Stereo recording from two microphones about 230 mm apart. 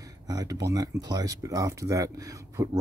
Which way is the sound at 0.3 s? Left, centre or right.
Centre.